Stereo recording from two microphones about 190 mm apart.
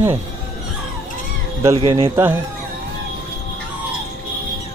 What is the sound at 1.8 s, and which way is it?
Speech, 30° right (ahead or behind).